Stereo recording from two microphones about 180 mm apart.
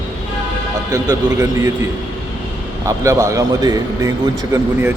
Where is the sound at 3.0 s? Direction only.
15° right (ahead or behind).